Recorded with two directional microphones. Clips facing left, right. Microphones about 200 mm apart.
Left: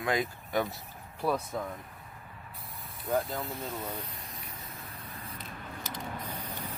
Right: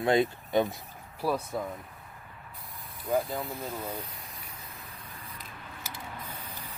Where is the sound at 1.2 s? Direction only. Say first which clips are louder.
Right 1 dB; 5° right (ahead or behind).